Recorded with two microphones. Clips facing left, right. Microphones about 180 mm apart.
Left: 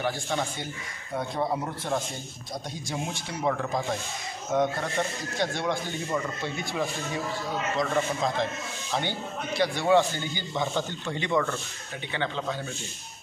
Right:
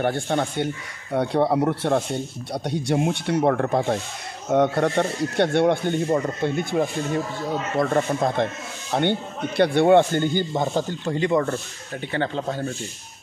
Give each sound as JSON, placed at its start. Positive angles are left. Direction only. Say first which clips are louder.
{"t": 0.0, "sound": "speech", "louder": "right 6 dB", "side_deg": -60}
{"t": 1.1, "sound": "speech", "louder": "right 8 dB", "side_deg": -70}
{"t": 6.0, "sound": "speech", "louder": "right 6 dB", "side_deg": -45}